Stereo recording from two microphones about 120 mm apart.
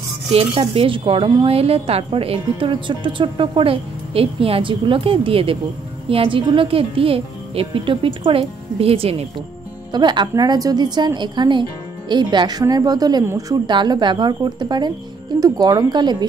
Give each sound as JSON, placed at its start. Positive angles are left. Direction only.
{"t": 0.3, "sound": "a woman's voice", "side_deg": -50}
{"t": 9.9, "sound": "a woman's voice", "side_deg": -35}